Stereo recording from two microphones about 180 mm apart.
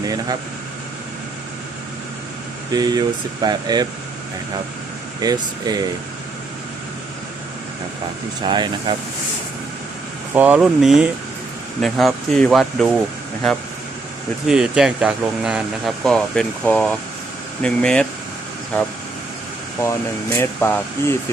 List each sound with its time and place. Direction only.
0.0 s speech: 20° right (ahead or behind)
2.7 s speech: 20° right (ahead or behind)
5.2 s speech: 20° right (ahead or behind)
8.4 s speech: 25° right (ahead or behind)
10.3 s speech: 10° right (ahead or behind)
14.4 s speech: 5° right (ahead or behind); by 21.2 s 15° left (ahead or behind)